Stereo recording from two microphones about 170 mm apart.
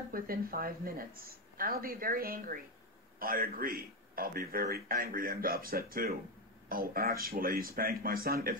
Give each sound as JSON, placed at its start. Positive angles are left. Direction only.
{"t": 0.1, "sound": "a man's voice", "side_deg": -60}